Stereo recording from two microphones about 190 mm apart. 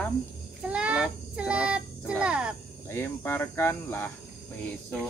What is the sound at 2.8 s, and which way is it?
Speech, 10° left (ahead or behind).